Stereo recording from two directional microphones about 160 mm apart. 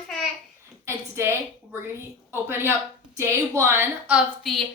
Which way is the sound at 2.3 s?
15° right (ahead or behind).